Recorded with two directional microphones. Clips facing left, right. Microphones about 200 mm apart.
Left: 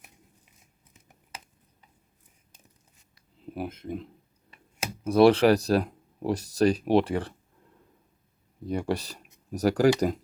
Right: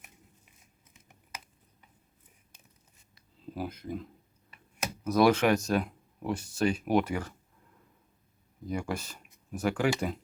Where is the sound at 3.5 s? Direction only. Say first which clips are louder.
Left 2 dB; 25° left (ahead or behind).